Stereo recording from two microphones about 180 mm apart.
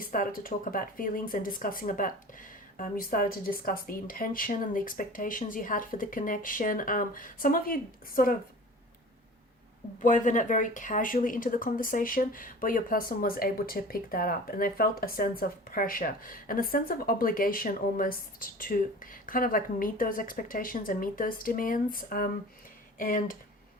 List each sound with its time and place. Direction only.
0.0 s speech: 50° left (ahead or behind)
10.0 s speech: 45° left (ahead or behind)